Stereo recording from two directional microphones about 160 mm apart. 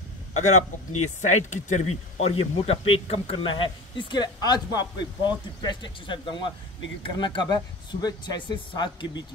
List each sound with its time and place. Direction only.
0.3 s speech: 45° left (ahead or behind); by 9.2 s 25° left (ahead or behind)